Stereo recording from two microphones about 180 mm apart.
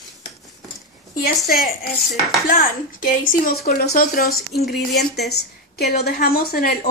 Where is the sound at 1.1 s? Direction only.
50° left (ahead or behind).